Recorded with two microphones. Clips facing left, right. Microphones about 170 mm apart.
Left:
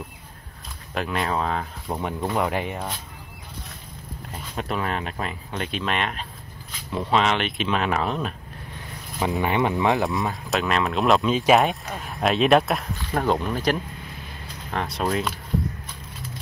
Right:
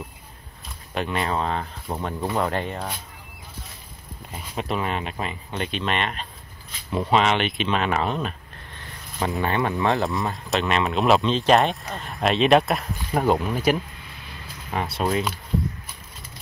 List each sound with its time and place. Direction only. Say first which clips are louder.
0.9 s speech: even; centre (ahead or behind)
1.9 s speech: left 1 dB; 10° left (ahead or behind)
4.3 s speech: right 1 dB; 5° right (ahead or behind)
9.4 s speech: left 1 dB; 15° left (ahead or behind)
9.9 s speech: left 1 dB; centre (ahead or behind)
12.9 s speech: right 3 dB; 15° right (ahead or behind)